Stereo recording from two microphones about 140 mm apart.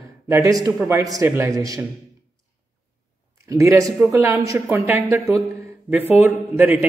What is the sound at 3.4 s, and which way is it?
Speech, 25° right (ahead or behind).